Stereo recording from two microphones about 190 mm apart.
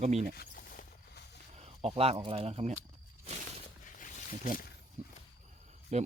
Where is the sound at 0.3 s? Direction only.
50° left (ahead or behind).